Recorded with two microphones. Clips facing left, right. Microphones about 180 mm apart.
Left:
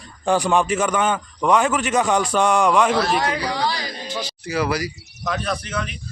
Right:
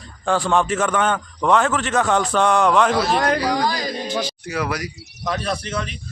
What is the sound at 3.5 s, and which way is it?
Speech, 45° right (ahead or behind).